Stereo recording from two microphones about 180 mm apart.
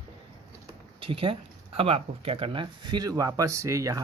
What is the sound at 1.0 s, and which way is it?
Speech, 30° right (ahead or behind).